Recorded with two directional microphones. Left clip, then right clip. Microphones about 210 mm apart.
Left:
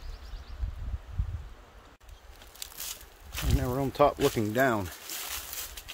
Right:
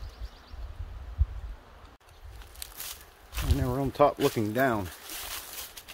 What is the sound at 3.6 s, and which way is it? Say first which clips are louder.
Speech: right 1 dB; 10° left (ahead or behind).